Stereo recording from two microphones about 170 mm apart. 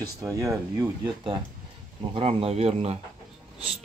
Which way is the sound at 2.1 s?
35° right (ahead or behind).